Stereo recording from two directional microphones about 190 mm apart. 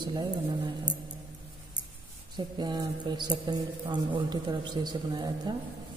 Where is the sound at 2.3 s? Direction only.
25° right (ahead or behind).